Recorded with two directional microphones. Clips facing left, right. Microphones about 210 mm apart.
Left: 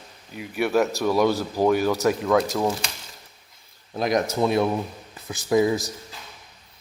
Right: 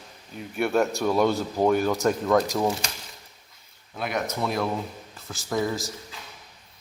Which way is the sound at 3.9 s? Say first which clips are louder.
Left 6 dB; 35° left (ahead or behind).